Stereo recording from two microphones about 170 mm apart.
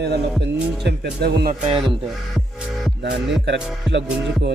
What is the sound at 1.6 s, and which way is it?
Music, 35° right (ahead or behind).